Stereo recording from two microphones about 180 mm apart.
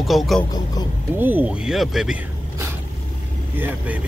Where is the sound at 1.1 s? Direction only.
10° right (ahead or behind).